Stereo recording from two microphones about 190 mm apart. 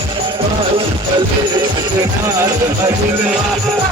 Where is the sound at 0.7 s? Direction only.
25° right (ahead or behind).